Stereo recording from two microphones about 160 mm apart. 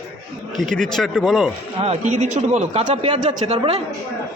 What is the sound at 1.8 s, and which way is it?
A man's voice, 45° right (ahead or behind).